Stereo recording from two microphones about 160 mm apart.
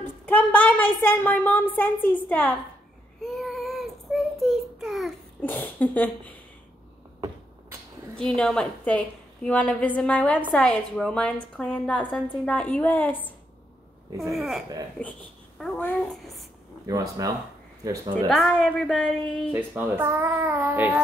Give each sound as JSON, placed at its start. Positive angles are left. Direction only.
{"t": 0.0, "sound": "a woman's voice", "side_deg": 10}
{"t": 3.3, "sound": "child singing", "side_deg": 0}
{"t": 5.4, "sound": "a woman's voice", "side_deg": 10}
{"t": 8.2, "sound": "a woman's voice", "side_deg": 5}
{"t": 14.3, "sound": "a child's voice", "side_deg": 0}
{"t": 16.8, "sound": "speech", "side_deg": -20}
{"t": 18.1, "sound": "a woman's voice", "side_deg": 5}
{"t": 19.5, "sound": "speech", "side_deg": -15}